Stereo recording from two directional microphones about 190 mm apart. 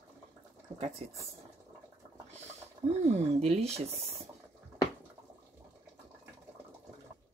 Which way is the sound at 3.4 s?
35° right (ahead or behind).